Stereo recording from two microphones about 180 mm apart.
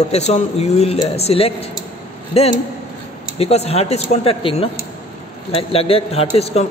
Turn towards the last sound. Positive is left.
turn(degrees=35)  # may be behind; listen again after turning